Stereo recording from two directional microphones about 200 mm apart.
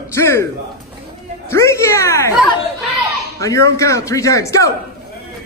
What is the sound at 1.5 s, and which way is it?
Speech, 15° left (ahead or behind).